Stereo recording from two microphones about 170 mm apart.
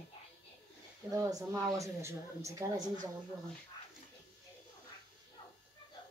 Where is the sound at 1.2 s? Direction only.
20° right (ahead or behind).